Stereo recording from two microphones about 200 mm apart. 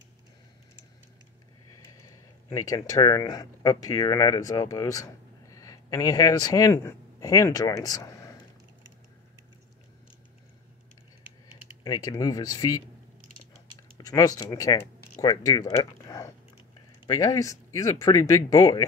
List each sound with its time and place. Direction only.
2.0 s speech: 15° left (ahead or behind)
11.8 s speech: 20° left (ahead or behind)
13.9 s speech: 20° left (ahead or behind)